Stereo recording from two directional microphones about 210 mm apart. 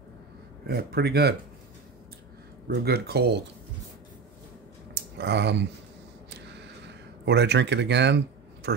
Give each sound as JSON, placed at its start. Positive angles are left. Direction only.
{"t": 0.7, "sound": "speech", "side_deg": -50}
{"t": 2.7, "sound": "speech", "side_deg": -50}
{"t": 5.1, "sound": "speech", "side_deg": -55}
{"t": 6.9, "sound": "speech", "side_deg": -55}